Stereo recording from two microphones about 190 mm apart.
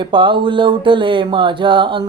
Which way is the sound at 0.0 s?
25° right (ahead or behind).